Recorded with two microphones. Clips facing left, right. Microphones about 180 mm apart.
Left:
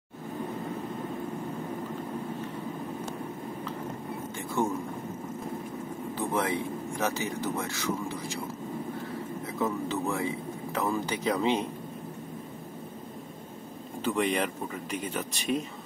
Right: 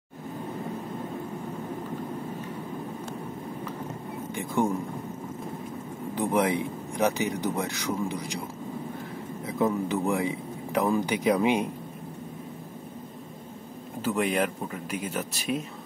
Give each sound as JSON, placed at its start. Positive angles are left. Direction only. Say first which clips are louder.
{"t": 4.4, "sound": "speech", "louder": "right 3 dB", "side_deg": -15}
{"t": 6.1, "sound": "speech", "louder": "right 5 dB", "side_deg": -15}
{"t": 9.6, "sound": "speech", "louder": "right 4 dB", "side_deg": -15}
{"t": 14.0, "sound": "speech", "louder": "right 2 dB", "side_deg": -5}